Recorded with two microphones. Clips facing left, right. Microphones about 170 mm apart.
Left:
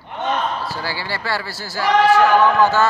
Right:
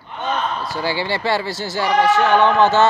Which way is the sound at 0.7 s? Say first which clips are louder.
Right 5 dB; 20° right (ahead or behind).